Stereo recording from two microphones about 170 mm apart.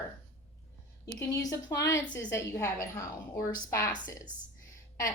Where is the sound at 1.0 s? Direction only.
20° left (ahead or behind).